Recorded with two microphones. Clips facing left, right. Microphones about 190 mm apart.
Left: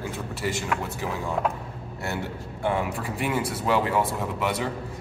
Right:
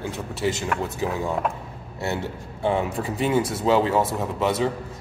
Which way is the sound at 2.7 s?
25° right (ahead or behind).